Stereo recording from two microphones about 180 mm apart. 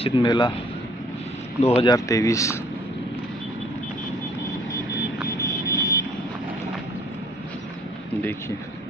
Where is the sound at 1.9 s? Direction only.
15° left (ahead or behind).